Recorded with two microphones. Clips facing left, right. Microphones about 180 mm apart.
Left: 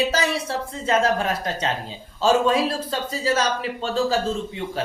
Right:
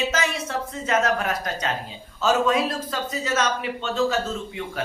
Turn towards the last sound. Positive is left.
turn(degrees=35)  # may be behind; listen again after turning